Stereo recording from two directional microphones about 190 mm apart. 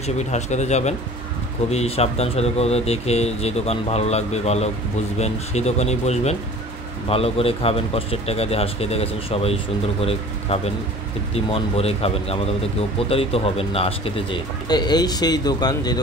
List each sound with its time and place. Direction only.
0.0 s speech: 35° left (ahead or behind); by 16.0 s 20° left (ahead or behind)